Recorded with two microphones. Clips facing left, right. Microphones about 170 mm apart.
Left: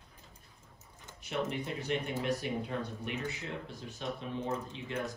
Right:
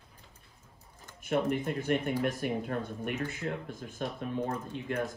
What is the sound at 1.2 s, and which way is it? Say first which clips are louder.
Speech: right 6 dB; 50° right (ahead or behind).